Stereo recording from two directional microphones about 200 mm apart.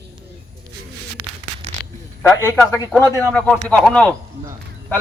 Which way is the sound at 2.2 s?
15° left (ahead or behind).